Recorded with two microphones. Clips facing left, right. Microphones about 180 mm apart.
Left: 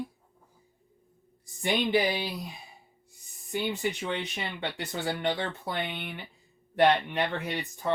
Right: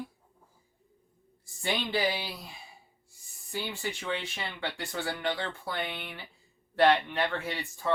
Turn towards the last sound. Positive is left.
turn(degrees=20)  # may be behind; listen again after turning